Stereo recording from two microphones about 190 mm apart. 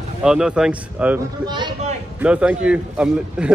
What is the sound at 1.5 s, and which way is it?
Speech, 25° right (ahead or behind).